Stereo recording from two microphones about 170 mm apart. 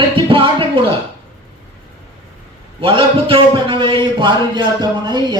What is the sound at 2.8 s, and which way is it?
A man's voice, 30° right (ahead or behind).